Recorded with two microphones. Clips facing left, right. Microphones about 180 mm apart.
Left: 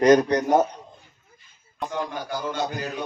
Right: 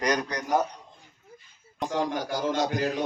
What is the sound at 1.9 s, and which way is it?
Speech, 80° right.